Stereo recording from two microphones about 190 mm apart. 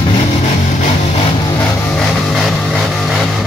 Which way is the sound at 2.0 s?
Centre (ahead or behind).